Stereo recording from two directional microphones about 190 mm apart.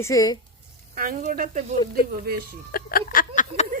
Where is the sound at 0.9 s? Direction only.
45° right (ahead or behind).